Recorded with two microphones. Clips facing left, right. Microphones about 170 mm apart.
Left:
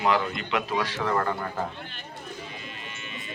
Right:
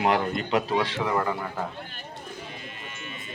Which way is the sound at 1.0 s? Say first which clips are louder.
Even; 10° right (ahead or behind).